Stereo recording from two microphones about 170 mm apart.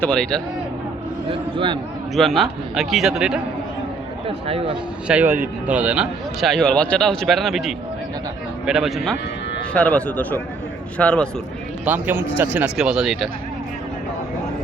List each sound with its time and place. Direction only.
0.0 s speech: 5° left (ahead or behind)
1.3 s a man's voice: 30° right (ahead or behind)
2.1 s speech: centre (ahead or behind)
4.3 s speech: 35° right (ahead or behind)
5.0 s speech: 10° right (ahead or behind); by 11.3 s 5° left (ahead or behind)
11.9 s speech: 10° right (ahead or behind)